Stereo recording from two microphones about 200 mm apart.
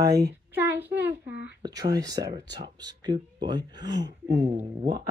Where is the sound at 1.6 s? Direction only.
20° right (ahead or behind).